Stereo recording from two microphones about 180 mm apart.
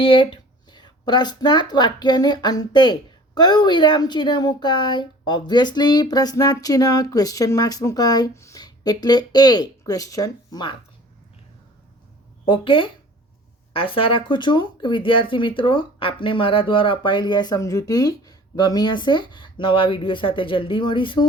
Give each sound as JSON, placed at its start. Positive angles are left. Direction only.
{"t": 0.0, "sound": "speech", "side_deg": 30}
{"t": 12.5, "sound": "speech", "side_deg": 30}